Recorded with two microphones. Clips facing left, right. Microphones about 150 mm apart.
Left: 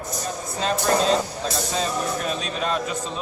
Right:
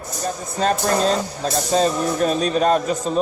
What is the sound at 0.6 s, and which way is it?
A man's voice, 45° right (ahead or behind).